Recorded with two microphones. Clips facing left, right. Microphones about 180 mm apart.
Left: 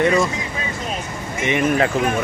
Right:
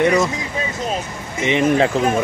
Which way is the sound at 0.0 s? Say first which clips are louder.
Right 1 dB; 15° right (ahead or behind).